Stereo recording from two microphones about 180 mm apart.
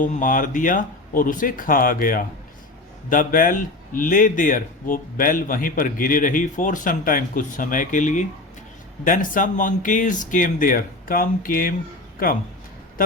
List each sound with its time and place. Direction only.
0.0 s a man's voice: 50° left (ahead or behind)